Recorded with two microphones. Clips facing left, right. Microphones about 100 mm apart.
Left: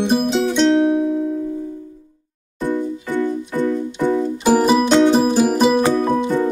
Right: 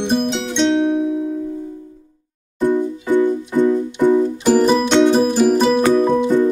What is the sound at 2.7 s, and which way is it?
Music, 15° right (ahead or behind).